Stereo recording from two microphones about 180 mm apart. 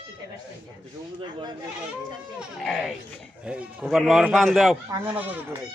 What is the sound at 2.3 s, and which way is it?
Speech, centre (ahead or behind).